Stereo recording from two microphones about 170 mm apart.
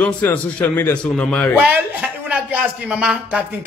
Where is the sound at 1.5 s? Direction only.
10° right (ahead or behind).